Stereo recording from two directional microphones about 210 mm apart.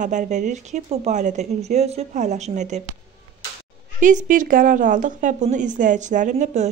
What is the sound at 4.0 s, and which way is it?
A woman's voice, 35° right (ahead or behind).